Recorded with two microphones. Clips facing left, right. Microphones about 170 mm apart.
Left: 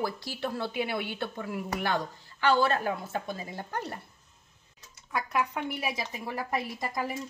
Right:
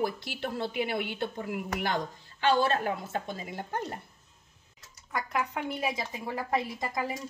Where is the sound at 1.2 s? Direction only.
20° right (ahead or behind).